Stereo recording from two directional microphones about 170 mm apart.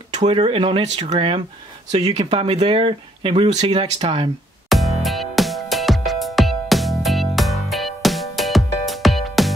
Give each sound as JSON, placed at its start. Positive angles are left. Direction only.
{"t": 0.2, "sound": "speech", "side_deg": -35}
{"t": 4.6, "sound": "music", "side_deg": 0}